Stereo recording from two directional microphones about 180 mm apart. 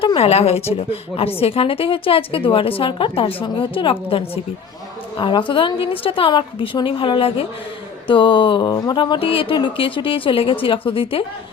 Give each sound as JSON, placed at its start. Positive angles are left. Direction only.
{"t": 0.0, "sound": "a woman's voice", "side_deg": 30}